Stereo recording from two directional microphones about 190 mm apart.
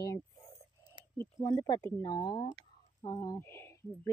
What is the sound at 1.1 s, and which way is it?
A woman's voice, 10° left (ahead or behind).